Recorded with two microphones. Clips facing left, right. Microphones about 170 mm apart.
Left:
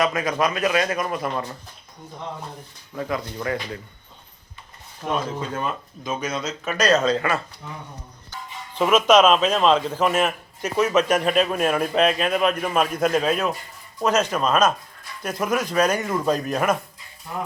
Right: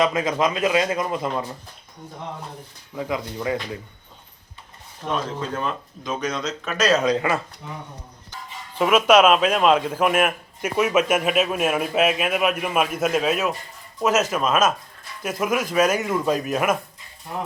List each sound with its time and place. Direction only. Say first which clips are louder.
0.0 s a man's voice: right 1 dB; 20° right (ahead or behind)
1.3 s a man's voice: right 1 dB; 10° right (ahead or behind)
2.9 s a man's voice: even; 10° right (ahead or behind)
5.0 s speech: left 1 dB; 5° left (ahead or behind)
7.0 s a man's voice: right 1 dB; 15° right (ahead or behind)
8.7 s a man's voice: even; 5° right (ahead or behind)